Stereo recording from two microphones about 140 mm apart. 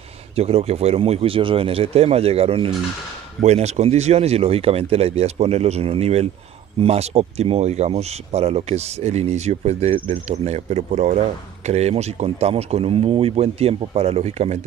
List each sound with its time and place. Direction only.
0.4 s speech: 50° right (ahead or behind)
10.3 s speech: 50° right (ahead or behind)